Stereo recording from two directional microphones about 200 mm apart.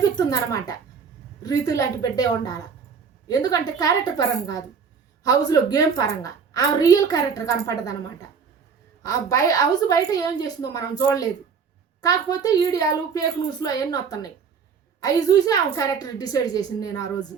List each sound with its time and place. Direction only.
0.2 s a woman's voice: 20° left (ahead or behind)
9.0 s a woman's voice: 15° left (ahead or behind)
12.0 s a woman's voice: 20° left (ahead or behind)